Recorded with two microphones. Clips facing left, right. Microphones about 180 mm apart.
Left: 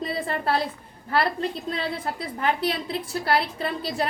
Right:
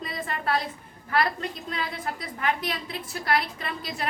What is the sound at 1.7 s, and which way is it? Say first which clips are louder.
A woman's voice: left 4 dB; 30° left (ahead or behind).